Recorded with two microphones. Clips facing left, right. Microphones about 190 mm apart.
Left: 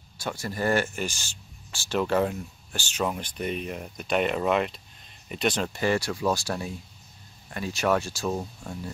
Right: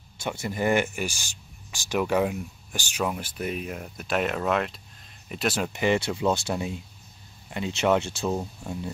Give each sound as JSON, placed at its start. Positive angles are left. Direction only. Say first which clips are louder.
{"t": 0.2, "sound": "speech", "louder": "right 2 dB", "side_deg": -20}
{"t": 5.7, "sound": "speech", "louder": "right 2 dB", "side_deg": -20}